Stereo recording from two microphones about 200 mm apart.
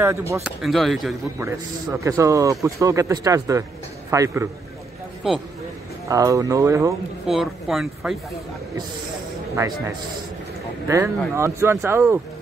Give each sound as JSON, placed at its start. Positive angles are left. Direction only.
{"t": 0.0, "sound": "speech", "side_deg": -15}
{"t": 0.6, "sound": "speech", "side_deg": 0}
{"t": 1.4, "sound": "speech", "side_deg": -15}
{"t": 5.2, "sound": "speech", "side_deg": -5}
{"t": 6.0, "sound": "speech", "side_deg": -15}
{"t": 7.2, "sound": "speech", "side_deg": 0}
{"t": 10.9, "sound": "speech", "side_deg": -15}